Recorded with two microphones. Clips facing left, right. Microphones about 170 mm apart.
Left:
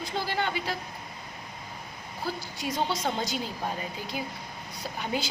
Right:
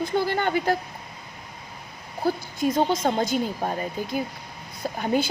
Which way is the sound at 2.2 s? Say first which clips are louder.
Right 10 dB; 50° right (ahead or behind).